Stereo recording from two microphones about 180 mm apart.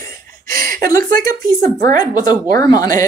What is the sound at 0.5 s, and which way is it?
Chuckle, 55° right (ahead or behind).